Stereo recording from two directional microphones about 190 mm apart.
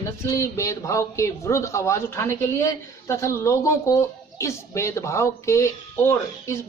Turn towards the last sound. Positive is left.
turn(degrees=15)  # may be behind; listen again after turning